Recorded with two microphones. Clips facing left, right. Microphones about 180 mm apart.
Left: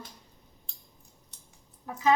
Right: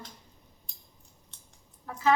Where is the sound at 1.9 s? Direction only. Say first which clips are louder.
Left 2 dB; 15° left (ahead or behind).